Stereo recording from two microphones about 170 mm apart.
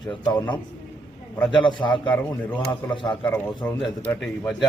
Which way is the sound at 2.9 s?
30° left (ahead or behind).